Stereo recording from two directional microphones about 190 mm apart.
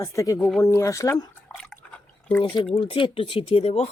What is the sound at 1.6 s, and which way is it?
Drip, 5° left (ahead or behind).